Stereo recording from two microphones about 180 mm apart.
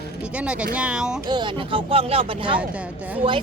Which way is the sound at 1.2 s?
25° right (ahead or behind).